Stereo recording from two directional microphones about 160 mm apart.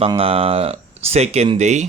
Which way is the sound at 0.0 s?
35° right (ahead or behind).